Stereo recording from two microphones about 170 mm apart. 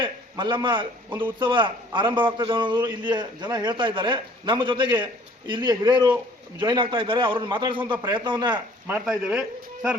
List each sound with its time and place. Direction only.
0.0 s a sound: 25° right (ahead or behind)
0.6 s a man's voice: 30° right (ahead or behind)
8.9 s speech: 5° right (ahead or behind)